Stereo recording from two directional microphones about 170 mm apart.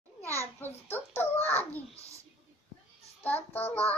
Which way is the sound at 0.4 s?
10° left (ahead or behind).